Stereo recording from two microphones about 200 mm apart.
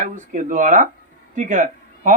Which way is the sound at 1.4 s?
40° right (ahead or behind).